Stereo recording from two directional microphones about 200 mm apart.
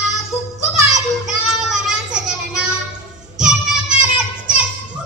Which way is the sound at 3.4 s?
5° right (ahead or behind).